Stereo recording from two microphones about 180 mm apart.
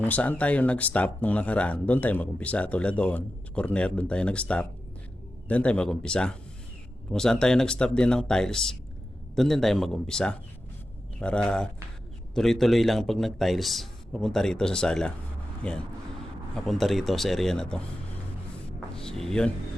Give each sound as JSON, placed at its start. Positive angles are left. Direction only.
{"t": 0.0, "sound": "a man's voice", "side_deg": 10}
{"t": 18.9, "sound": "music", "side_deg": 5}